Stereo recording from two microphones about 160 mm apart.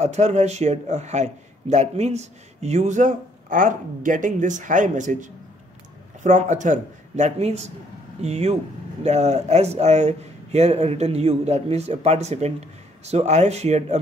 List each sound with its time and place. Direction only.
0.0 s a man's voice: 45° right (ahead or behind)